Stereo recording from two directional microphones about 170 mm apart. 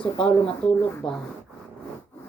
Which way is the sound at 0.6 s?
5° left (ahead or behind).